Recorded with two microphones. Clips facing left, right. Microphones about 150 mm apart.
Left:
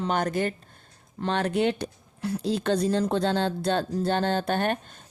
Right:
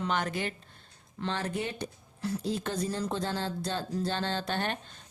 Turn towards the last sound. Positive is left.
turn(degrees=50)  # may be behind; listen again after turning